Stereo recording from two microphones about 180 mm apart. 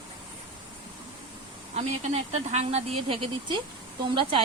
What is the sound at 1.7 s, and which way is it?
A woman's voice, 35° right (ahead or behind).